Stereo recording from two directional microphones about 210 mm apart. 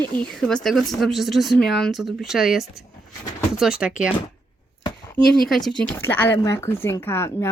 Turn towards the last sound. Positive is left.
turn(degrees=10)  # may be behind; listen again after turning